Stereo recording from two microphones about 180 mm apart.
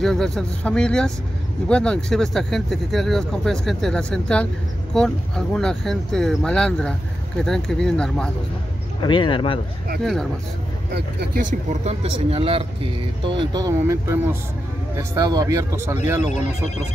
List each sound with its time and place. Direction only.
0.0 s speech: centre (ahead or behind)
9.0 s speech: 25° left (ahead or behind)
11.0 s speech: 65° right (ahead or behind)
11.8 s speech: 35° right (ahead or behind); by 16.0 s 15° right (ahead or behind)